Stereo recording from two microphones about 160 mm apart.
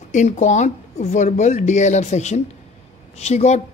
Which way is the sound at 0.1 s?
50° left (ahead or behind).